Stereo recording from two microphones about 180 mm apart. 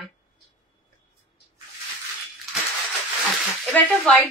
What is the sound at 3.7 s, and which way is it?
Speech, 10° left (ahead or behind).